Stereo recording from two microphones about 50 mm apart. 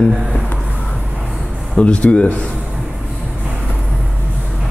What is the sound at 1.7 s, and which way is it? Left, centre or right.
Speech, left.